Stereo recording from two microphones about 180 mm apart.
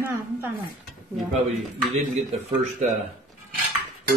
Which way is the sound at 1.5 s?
35° right (ahead or behind).